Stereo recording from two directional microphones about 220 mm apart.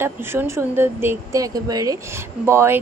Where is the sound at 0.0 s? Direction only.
10° right (ahead or behind).